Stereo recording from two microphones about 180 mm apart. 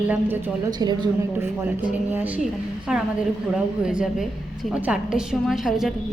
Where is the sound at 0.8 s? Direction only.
25° right (ahead or behind).